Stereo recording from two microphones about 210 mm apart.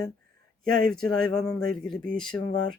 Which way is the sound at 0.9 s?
5° left (ahead or behind).